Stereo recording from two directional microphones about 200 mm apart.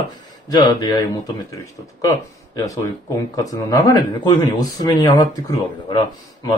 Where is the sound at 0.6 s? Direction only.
20° left (ahead or behind).